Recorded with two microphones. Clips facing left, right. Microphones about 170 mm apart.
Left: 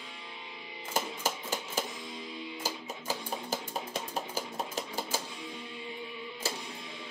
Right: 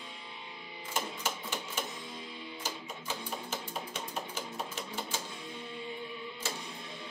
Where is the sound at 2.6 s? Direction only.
35° left (ahead or behind).